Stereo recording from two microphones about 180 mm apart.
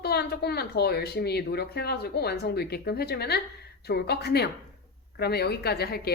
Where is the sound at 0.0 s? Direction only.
65° left (ahead or behind).